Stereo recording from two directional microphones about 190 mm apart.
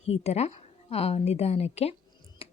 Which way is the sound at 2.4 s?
30° left (ahead or behind).